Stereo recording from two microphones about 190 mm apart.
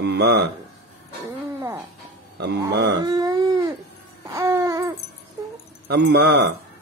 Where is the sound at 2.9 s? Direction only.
20° right (ahead or behind).